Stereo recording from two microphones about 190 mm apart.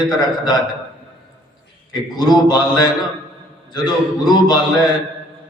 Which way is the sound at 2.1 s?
20° left (ahead or behind).